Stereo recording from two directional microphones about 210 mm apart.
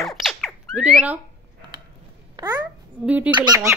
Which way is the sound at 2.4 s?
20° right (ahead or behind).